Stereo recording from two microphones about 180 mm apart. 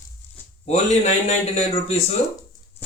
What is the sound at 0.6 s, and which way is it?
Speech, 40° left (ahead or behind).